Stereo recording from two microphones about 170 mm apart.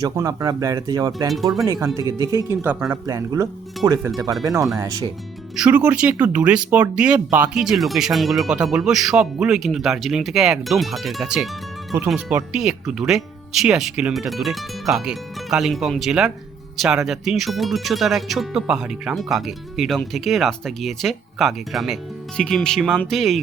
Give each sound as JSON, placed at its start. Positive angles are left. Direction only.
{"t": 0.0, "sound": "speech", "side_deg": -20}
{"t": 5.5, "sound": "speech", "side_deg": -5}